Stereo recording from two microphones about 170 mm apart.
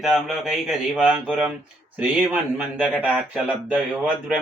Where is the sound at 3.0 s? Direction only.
5° right (ahead or behind).